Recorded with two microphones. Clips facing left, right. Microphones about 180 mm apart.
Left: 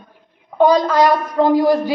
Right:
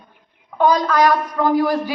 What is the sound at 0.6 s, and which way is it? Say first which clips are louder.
A woman's voice: left 3 dB; 25° left (ahead or behind).